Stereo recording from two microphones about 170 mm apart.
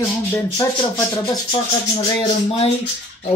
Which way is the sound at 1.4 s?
25° left (ahead or behind).